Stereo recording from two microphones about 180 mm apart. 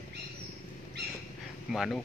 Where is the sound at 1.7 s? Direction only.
Centre (ahead or behind).